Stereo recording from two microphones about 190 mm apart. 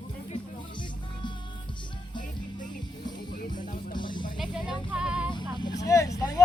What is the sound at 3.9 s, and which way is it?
Music, 25° left (ahead or behind).